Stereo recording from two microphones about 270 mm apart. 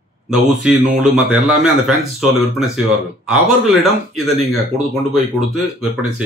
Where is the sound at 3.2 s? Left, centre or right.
Centre.